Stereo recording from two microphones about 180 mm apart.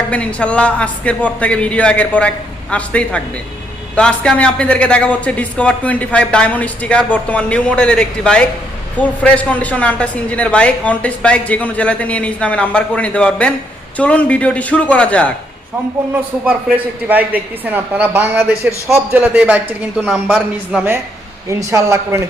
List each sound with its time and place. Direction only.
0.1 s a man's voice: 5° left (ahead or behind)
16.5 s a woman's voice: 10° right (ahead or behind)